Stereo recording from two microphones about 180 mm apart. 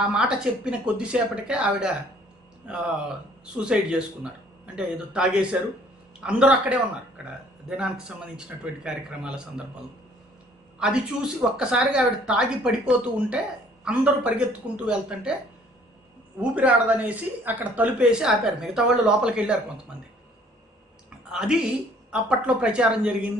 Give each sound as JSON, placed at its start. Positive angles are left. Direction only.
{"t": 0.0, "sound": "a woman's voice", "side_deg": -5}
{"t": 8.4, "sound": "speech", "side_deg": -5}
{"t": 10.8, "sound": "a woman's voice", "side_deg": -5}
{"t": 16.3, "sound": "a woman's voice", "side_deg": -10}
{"t": 21.3, "sound": "speech", "side_deg": -5}